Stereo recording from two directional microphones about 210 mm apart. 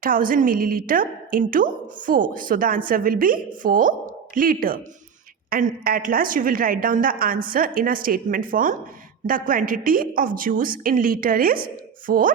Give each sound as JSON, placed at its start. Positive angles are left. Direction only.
{"t": 0.0, "sound": "a woman's voice", "side_deg": -40}